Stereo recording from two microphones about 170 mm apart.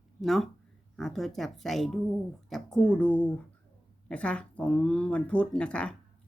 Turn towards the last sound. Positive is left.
turn(degrees=5)  # may be behind; listen again after turning